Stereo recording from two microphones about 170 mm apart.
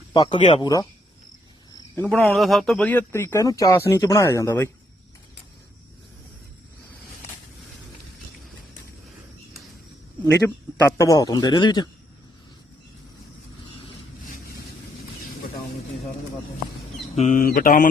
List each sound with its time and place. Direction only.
0.1 s a man's voice: 25° left (ahead or behind)
2.0 s speech: 5° left (ahead or behind)
10.2 s a man's voice: 15° left (ahead or behind)
17.2 s speech: 50° left (ahead or behind)